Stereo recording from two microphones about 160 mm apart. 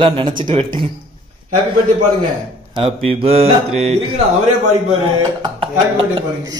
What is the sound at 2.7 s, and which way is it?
Speech, 35° right (ahead or behind).